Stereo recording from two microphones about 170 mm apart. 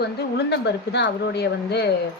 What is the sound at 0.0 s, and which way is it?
A woman's voice, 80° left.